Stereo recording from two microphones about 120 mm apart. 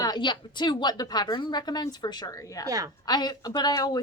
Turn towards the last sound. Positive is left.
turn(degrees=35)  # may be behind; listen again after turning